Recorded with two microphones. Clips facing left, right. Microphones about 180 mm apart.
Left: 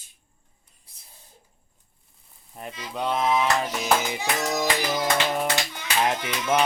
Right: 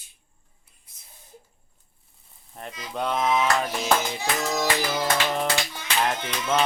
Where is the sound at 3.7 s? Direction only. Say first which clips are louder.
Even; 15° left (ahead or behind).